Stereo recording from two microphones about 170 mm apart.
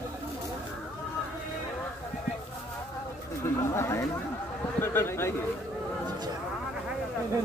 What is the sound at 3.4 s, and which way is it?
Speech, 15° left (ahead or behind).